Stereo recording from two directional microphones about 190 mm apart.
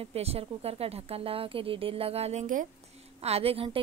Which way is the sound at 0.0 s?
30° right (ahead or behind).